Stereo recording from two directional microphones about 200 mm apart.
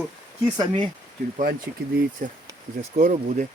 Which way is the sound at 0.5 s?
20° right (ahead or behind).